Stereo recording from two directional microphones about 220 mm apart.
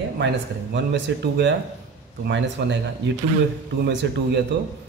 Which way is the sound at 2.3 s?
55° right (ahead or behind).